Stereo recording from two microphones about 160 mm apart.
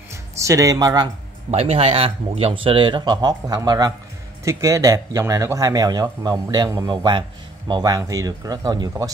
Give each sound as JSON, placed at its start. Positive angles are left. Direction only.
{"t": 0.1, "sound": "speech", "side_deg": -20}
{"t": 1.5, "sound": "speech", "side_deg": -40}